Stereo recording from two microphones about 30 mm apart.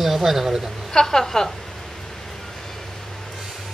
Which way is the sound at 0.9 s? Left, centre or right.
Centre.